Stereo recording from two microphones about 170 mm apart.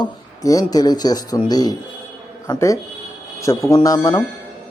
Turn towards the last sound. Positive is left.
turn(degrees=20)  # may be behind; listen again after turning